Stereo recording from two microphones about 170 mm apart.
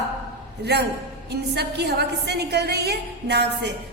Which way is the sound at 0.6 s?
75° right (ahead or behind).